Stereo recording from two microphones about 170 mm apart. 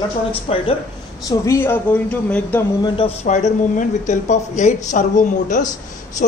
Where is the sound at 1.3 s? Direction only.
20° left (ahead or behind).